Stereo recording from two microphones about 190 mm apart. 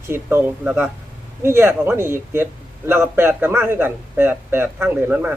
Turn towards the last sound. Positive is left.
turn(degrees=-10)  # may be behind; listen again after turning